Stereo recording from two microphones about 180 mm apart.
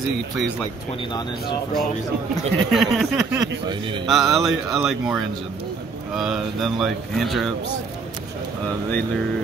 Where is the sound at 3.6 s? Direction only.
25° right (ahead or behind).